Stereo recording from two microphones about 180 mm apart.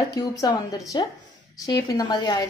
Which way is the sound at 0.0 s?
20° left (ahead or behind).